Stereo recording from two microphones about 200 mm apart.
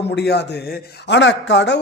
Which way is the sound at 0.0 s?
55° left (ahead or behind).